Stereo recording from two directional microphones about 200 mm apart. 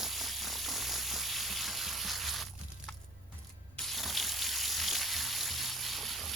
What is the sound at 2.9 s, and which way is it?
Music, 5° left (ahead or behind).